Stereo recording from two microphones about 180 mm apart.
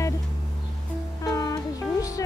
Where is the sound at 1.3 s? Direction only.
20° left (ahead or behind).